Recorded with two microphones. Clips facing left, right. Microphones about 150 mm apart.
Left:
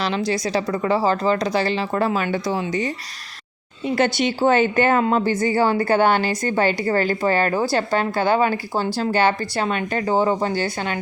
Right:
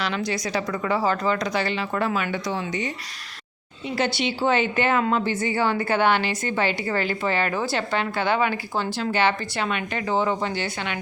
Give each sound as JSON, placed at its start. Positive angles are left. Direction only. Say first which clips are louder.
{"t": 0.0, "sound": "a woman's voice", "louder": "left 4 dB", "side_deg": 30}
{"t": 3.8, "sound": "a woman's voice", "louder": "left 5 dB", "side_deg": 50}